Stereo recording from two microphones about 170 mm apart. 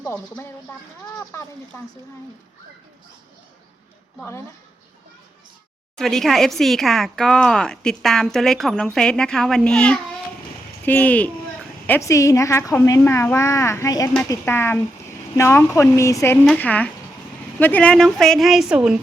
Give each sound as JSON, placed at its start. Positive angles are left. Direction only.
{"t": 0.0, "sound": "a woman's voice", "side_deg": 10}
{"t": 6.0, "sound": "a woman's voice", "side_deg": 0}